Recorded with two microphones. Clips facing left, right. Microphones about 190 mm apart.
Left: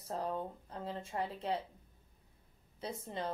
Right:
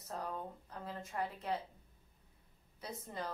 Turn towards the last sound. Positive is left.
turn(degrees=30)  # may be behind; listen again after turning